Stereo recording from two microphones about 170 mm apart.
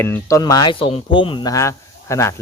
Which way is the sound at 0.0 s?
15° left (ahead or behind).